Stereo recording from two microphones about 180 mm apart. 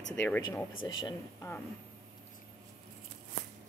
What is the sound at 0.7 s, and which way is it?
Speech, 90° left.